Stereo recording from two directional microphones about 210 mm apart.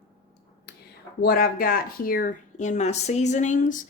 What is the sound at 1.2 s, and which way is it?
Speech, 45° left (ahead or behind).